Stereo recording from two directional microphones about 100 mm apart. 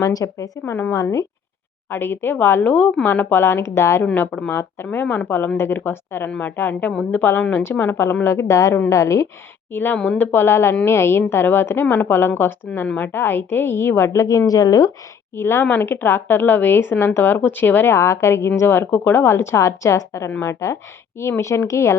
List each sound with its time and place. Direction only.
0.0 s a woman's voice: 35° left (ahead or behind)
0.6 s a woman's voice: 20° left (ahead or behind)
0.9 s a woman's voice: 30° left (ahead or behind)
1.9 s a woman's voice: 20° left (ahead or behind)
4.0 s a woman's voice: 15° left (ahead or behind); by 9.2 s 30° left (ahead or behind)
9.7 s a woman's voice: 20° left (ahead or behind); by 14.8 s 40° left (ahead or behind)
15.4 s a woman's voice: 25° left (ahead or behind)